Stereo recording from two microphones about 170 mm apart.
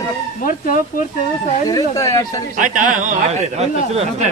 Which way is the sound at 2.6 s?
50° right (ahead or behind).